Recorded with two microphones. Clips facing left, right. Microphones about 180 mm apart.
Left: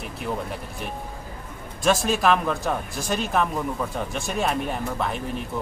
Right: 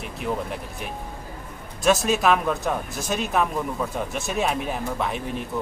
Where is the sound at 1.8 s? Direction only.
Centre (ahead or behind).